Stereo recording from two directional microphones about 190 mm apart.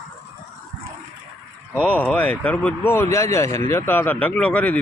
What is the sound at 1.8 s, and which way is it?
Speech, 10° left (ahead or behind).